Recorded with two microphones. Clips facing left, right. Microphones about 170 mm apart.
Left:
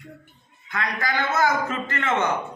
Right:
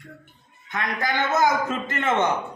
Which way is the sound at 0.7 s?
20° right (ahead or behind).